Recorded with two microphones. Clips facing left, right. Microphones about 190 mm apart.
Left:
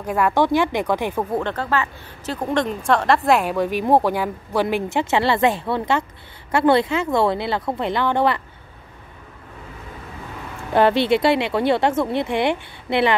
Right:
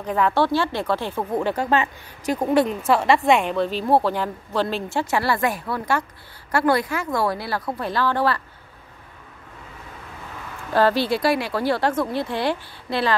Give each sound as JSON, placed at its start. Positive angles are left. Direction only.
{"t": 0.0, "sound": "a woman's voice", "side_deg": 10}
{"t": 1.4, "sound": "a woman's voice", "side_deg": -10}
{"t": 10.7, "sound": "speech", "side_deg": 20}